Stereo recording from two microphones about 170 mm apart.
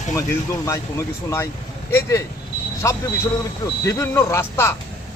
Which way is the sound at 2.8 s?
15° left (ahead or behind).